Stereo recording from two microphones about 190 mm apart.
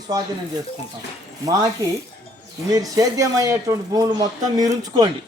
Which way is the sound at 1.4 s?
20° right (ahead or behind).